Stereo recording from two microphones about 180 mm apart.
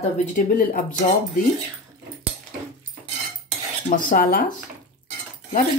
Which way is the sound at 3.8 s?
50° left (ahead or behind).